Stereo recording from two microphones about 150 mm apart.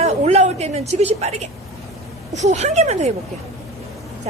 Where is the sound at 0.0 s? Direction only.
45° right (ahead or behind).